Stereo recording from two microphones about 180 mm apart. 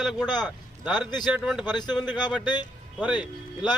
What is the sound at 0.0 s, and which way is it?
Vehicle, centre (ahead or behind).